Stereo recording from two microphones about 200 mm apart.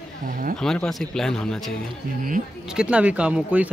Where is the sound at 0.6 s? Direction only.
5° left (ahead or behind).